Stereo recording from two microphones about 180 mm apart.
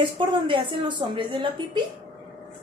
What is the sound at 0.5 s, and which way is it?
A woman's voice, 30° right (ahead or behind).